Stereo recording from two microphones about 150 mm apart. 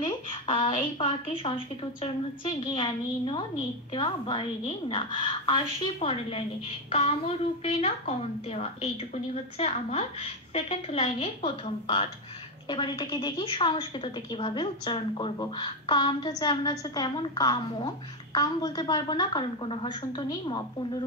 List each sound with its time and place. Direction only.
0.0 s a sound: 35° left (ahead or behind)
0.7 s a woman's voice: 40° left (ahead or behind)
7.6 s a woman's voice: 45° left (ahead or behind)